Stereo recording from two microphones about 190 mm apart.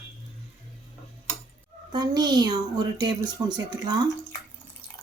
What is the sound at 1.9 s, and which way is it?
Speech, 20° right (ahead or behind).